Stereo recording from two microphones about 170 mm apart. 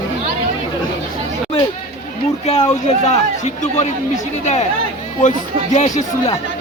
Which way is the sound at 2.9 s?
40° left (ahead or behind).